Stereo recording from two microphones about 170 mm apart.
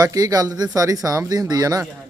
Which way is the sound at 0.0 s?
20° right (ahead or behind).